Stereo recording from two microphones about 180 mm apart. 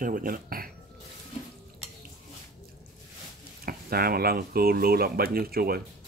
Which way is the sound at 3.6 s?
55° right (ahead or behind).